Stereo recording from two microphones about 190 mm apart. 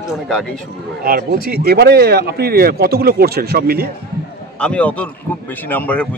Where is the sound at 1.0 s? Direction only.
50° right (ahead or behind).